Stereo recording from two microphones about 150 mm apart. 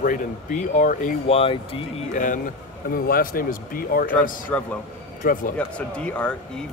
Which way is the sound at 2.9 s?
85° left.